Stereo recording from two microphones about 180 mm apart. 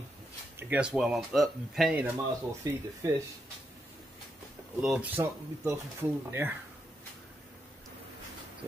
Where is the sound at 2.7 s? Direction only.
20° right (ahead or behind).